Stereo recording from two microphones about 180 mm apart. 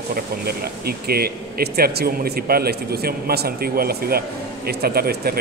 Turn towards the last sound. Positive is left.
turn(degrees=-60)  # may be behind; listen again after turning